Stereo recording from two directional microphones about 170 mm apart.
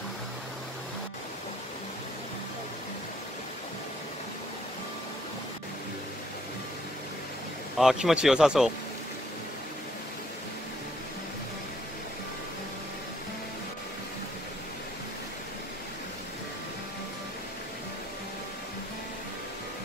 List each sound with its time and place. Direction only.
7.7 s speech: centre (ahead or behind)